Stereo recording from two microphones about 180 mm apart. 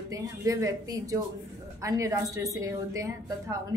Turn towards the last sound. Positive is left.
turn(degrees=-20)  # may be behind; listen again after turning